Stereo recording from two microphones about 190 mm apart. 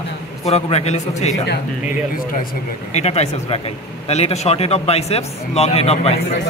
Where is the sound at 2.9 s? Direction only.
35° left (ahead or behind).